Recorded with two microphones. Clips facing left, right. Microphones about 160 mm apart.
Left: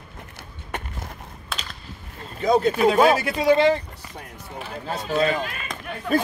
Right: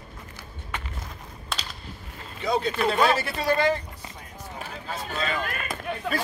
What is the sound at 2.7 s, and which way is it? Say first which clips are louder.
Speech: left 5 dB; 10° left (ahead or behind).